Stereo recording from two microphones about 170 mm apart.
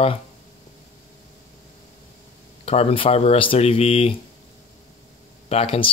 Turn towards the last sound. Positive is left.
turn(degrees=35)  # may be behind; listen again after turning